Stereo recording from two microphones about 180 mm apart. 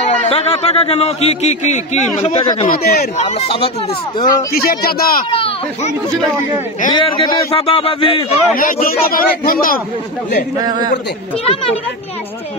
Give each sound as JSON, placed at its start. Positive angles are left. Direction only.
{"t": 0.0, "sound": "a man's voice", "side_deg": 35}
{"t": 2.7, "sound": "speech", "side_deg": 55}
{"t": 3.2, "sound": "a man's voice", "side_deg": 35}
{"t": 4.2, "sound": "a man's voice", "side_deg": 20}
{"t": 4.6, "sound": "speech", "side_deg": 55}
{"t": 5.3, "sound": "a man's voice", "side_deg": 30}
{"t": 8.5, "sound": "speech", "side_deg": 50}
{"t": 10.6, "sound": "a man's voice", "side_deg": -25}